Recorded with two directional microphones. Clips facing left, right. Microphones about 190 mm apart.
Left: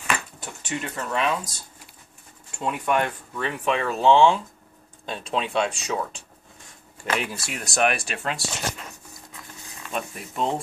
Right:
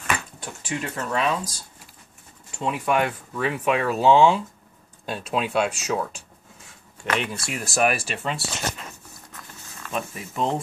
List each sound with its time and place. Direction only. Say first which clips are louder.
0.0 s a sound: even; centre (ahead or behind)
2.5 s speech: right 1 dB; centre (ahead or behind)
9.9 s speech: right 1 dB; centre (ahead or behind)